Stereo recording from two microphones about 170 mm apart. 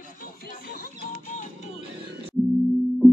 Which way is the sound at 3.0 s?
Centre (ahead or behind).